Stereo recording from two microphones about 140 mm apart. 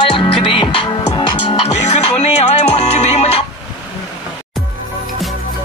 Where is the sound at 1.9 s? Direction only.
50° left (ahead or behind).